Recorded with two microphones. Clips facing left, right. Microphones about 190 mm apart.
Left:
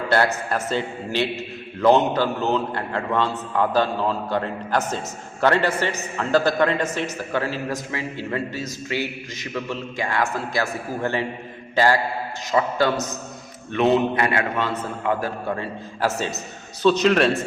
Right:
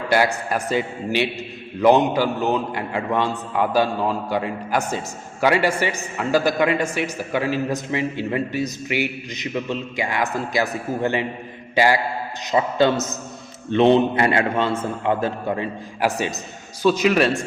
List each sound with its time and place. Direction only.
0.1 s a man's voice: 10° right (ahead or behind)
11.7 s mantra: 15° right (ahead or behind)
12.5 s a man's voice: 20° right (ahead or behind); by 17.4 s centre (ahead or behind)